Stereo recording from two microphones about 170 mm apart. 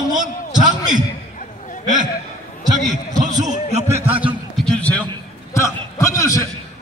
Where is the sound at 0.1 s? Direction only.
50° right (ahead or behind).